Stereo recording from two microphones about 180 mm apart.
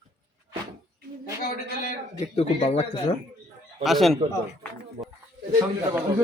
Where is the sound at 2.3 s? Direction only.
35° left (ahead or behind).